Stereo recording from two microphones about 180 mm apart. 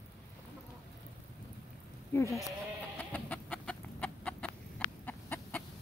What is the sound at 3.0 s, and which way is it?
Chicken, 10° left (ahead or behind).